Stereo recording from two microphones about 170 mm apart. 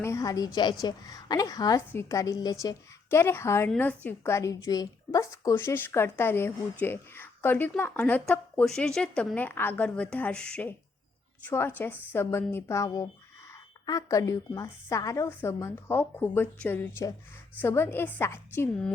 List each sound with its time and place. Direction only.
0.0 s a woman's voice: 20° left (ahead or behind)